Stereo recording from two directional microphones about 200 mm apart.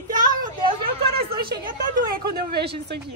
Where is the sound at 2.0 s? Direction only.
50° right (ahead or behind).